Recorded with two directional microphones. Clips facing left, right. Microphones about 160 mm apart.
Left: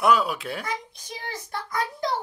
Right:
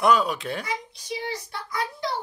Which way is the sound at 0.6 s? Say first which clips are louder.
Even; 50° left (ahead or behind).